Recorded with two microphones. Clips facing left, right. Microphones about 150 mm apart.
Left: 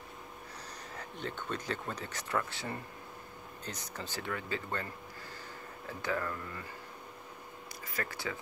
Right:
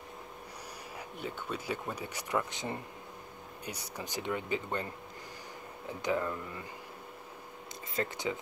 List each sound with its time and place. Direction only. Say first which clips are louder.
0.9 s speech: even; 10° right (ahead or behind)
5.9 s speech: right 3 dB; 20° right (ahead or behind)
7.9 s speech: right 5 dB; 20° right (ahead or behind)